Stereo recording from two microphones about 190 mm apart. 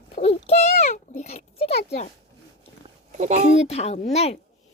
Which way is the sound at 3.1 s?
40° right (ahead or behind).